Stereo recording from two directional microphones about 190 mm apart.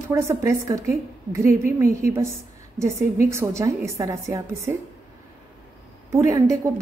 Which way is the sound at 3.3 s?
15° right (ahead or behind).